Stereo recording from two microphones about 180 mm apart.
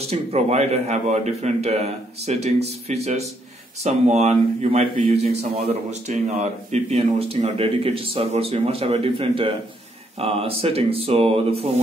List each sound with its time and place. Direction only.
0.0 s speech: 35° right (ahead or behind)